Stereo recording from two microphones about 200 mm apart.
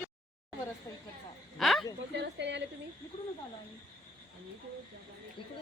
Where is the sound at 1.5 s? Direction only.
Centre (ahead or behind).